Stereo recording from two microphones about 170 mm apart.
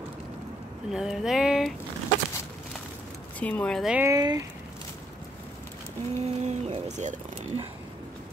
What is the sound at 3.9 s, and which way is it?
Speech, 15° right (ahead or behind).